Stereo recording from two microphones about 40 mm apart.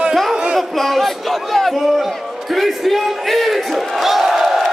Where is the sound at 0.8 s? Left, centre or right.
Centre.